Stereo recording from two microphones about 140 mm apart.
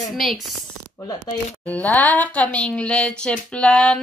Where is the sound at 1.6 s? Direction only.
10° left (ahead or behind).